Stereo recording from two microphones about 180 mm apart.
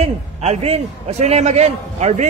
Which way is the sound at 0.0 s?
35° right (ahead or behind).